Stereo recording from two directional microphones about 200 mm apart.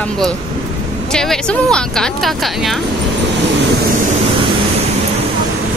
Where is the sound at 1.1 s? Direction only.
5° left (ahead or behind).